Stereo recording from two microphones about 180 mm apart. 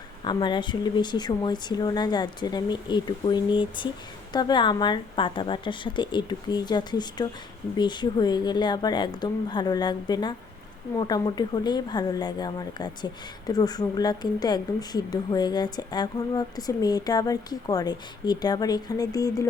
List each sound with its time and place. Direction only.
0.3 s speech: 25° left (ahead or behind)